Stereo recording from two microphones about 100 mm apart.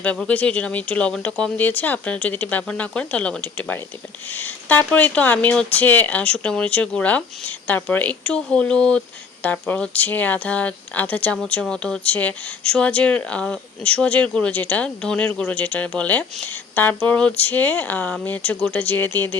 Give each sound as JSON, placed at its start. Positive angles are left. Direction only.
{"t": 0.0, "sound": "speech", "side_deg": 10}